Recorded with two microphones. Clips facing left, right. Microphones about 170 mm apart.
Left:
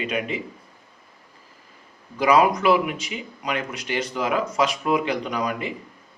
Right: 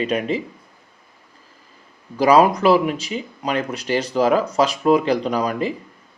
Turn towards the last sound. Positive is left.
turn(degrees=-35)  # may be behind; listen again after turning